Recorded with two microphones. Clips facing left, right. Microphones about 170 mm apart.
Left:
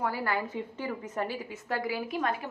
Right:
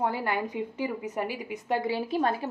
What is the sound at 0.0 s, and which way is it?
A woman's voice, 20° right (ahead or behind).